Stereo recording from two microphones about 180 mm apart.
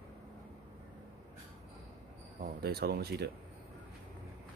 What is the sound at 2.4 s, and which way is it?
Speech, 60° right (ahead or behind).